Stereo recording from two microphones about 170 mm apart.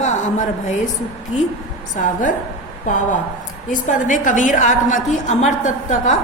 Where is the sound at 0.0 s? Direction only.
45° left (ahead or behind).